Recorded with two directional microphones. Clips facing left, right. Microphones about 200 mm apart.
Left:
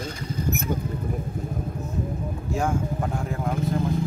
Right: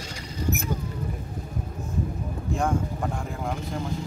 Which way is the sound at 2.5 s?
5° left (ahead or behind).